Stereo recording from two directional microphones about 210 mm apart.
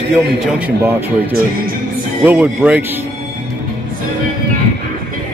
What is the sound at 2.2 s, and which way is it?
Speech, 10° right (ahead or behind).